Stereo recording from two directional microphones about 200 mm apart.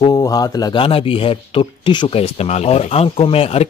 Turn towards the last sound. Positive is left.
turn(degrees=30)  # may be behind; listen again after turning